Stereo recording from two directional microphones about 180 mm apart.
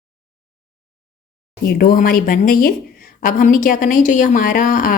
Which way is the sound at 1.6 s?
55° left (ahead or behind).